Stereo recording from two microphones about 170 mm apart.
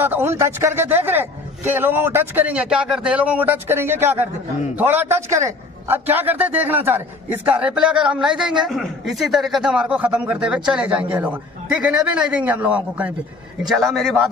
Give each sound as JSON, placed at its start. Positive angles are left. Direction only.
{"t": 0.0, "sound": "a man's voice", "side_deg": -10}